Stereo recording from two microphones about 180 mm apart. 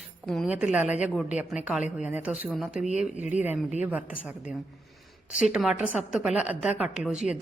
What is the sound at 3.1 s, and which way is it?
Speech, 40° left (ahead or behind).